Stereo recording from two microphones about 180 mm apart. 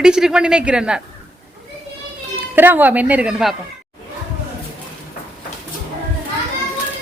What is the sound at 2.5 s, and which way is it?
A woman's voice, 10° right (ahead or behind).